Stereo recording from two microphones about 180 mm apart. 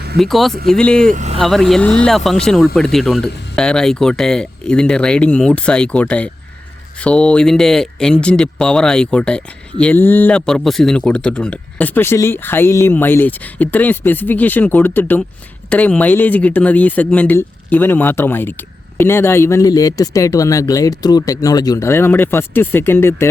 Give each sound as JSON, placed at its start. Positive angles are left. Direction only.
{"t": 0.2, "sound": "speech", "side_deg": 0}
{"t": 1.1, "sound": "speech", "side_deg": -40}
{"t": 1.4, "sound": "speech", "side_deg": 0}